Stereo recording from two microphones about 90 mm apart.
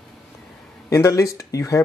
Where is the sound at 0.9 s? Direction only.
35° left (ahead or behind).